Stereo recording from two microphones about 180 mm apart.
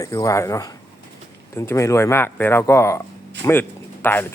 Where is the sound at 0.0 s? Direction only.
20° left (ahead or behind).